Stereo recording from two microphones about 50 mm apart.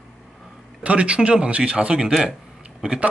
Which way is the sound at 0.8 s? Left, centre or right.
Right.